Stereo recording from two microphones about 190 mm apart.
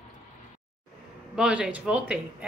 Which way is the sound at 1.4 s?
5° right (ahead or behind).